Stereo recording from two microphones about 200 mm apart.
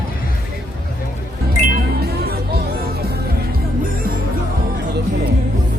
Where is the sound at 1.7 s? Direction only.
50° right (ahead or behind).